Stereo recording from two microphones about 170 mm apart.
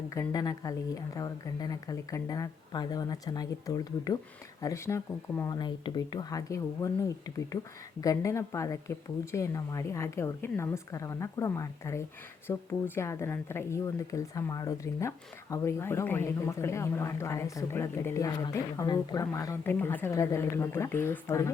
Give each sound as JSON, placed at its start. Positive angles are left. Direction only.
{"t": 0.1, "sound": "speech", "side_deg": 20}